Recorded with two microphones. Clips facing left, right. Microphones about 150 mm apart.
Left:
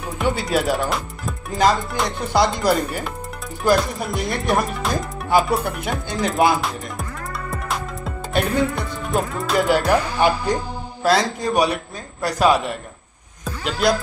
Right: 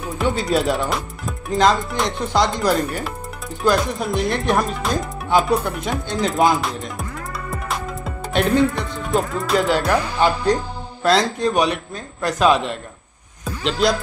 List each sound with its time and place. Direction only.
0.2 s speech: centre (ahead or behind)
7.5 s music: centre (ahead or behind)
9.8 s a man's voice: 10° left (ahead or behind)